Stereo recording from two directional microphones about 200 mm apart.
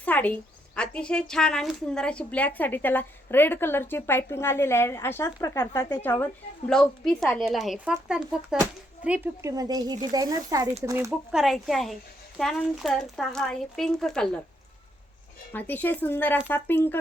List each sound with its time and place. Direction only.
0.0 s a sound: 5° left (ahead or behind)
0.8 s a woman's voice: 5° left (ahead or behind); by 11.1 s 15° right (ahead or behind)
11.3 s speech: centre (ahead or behind)
15.5 s a woman's voice: 10° left (ahead or behind)